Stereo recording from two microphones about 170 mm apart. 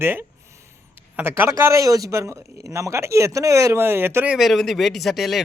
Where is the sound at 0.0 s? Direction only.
10° right (ahead or behind).